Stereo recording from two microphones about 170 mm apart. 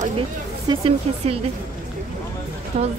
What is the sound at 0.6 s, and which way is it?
Speech, 35° right (ahead or behind).